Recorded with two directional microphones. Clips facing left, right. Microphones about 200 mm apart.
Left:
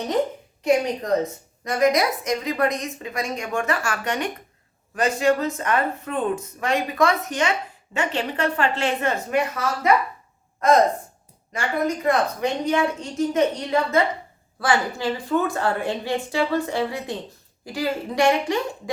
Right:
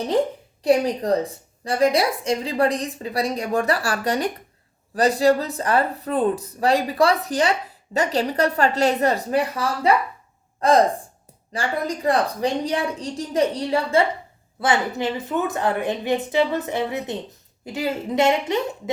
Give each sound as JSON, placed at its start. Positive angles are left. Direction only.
{"t": 0.6, "sound": "a woman's voice", "side_deg": -35}
{"t": 14.6, "sound": "speech", "side_deg": -20}